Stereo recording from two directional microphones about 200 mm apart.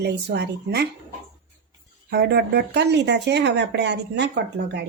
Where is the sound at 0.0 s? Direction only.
55° right (ahead or behind).